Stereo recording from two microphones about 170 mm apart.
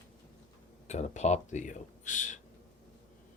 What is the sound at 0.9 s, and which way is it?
Speech, 40° left (ahead or behind).